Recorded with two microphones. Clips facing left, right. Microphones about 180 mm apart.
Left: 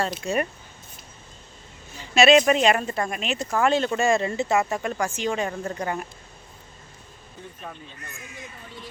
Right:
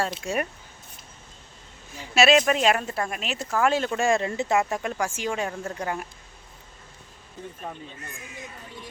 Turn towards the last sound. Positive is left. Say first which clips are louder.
# right 2 dB
turn(degrees=-15)  # may be behind; listen again after turning